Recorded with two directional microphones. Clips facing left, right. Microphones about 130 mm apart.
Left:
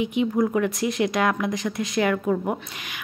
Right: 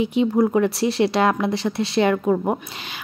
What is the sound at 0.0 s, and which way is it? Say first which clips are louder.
A woman's voice: right 4 dB; 30° right (ahead or behind).